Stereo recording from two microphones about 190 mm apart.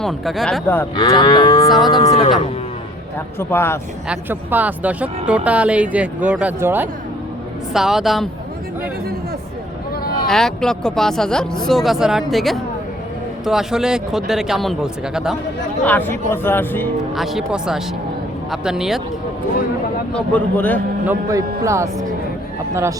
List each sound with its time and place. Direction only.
0.0 s speech: centre (ahead or behind)
0.9 s moo: 20° left (ahead or behind)
3.3 s speech: 10° left (ahead or behind)
4.1 s speech: 10° right (ahead or behind)
10.2 s speech: centre (ahead or behind)
15.8 s speech: 10° left (ahead or behind)
17.2 s speech: centre (ahead or behind)
20.1 s speech: 10° left (ahead or behind)
21.1 s speech: 15° right (ahead or behind)